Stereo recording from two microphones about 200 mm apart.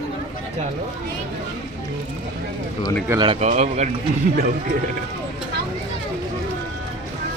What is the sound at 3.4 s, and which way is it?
Speech, 35° right (ahead or behind).